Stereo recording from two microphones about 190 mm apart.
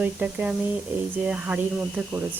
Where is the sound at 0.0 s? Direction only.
10° right (ahead or behind).